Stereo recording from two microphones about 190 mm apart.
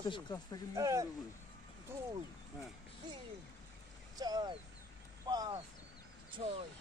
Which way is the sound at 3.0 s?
20° right (ahead or behind).